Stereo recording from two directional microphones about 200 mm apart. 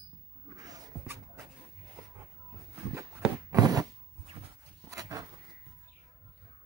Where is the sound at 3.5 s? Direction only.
20° right (ahead or behind).